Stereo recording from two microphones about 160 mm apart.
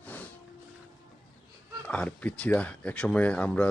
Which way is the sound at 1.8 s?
10° left (ahead or behind).